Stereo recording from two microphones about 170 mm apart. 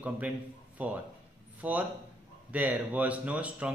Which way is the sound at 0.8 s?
10° right (ahead or behind).